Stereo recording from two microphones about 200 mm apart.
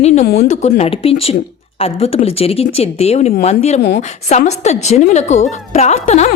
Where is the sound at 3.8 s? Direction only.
55° left (ahead or behind).